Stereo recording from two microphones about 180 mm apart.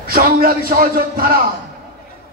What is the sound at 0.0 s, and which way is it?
Speech, 55° right (ahead or behind).